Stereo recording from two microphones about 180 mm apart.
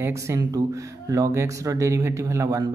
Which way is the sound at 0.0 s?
15° right (ahead or behind).